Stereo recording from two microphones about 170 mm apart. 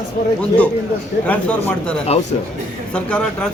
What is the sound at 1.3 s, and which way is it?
Speech, 10° left (ahead or behind).